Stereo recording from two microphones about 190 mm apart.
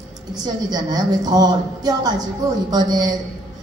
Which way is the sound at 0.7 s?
20° right (ahead or behind).